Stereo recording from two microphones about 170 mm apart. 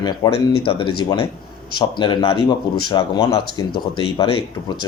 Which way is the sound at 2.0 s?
30° left (ahead or behind).